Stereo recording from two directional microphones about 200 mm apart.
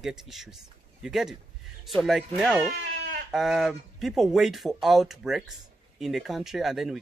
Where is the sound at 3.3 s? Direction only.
Centre (ahead or behind).